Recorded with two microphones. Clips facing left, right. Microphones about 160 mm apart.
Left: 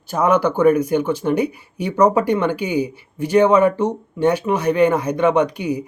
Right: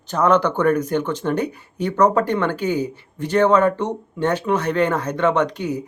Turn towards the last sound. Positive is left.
turn(degrees=10)  # may be behind; listen again after turning